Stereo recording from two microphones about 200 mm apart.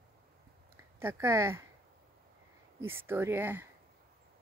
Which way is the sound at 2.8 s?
10° right (ahead or behind).